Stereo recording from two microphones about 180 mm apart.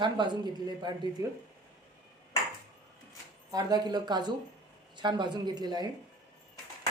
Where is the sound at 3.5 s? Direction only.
20° right (ahead or behind).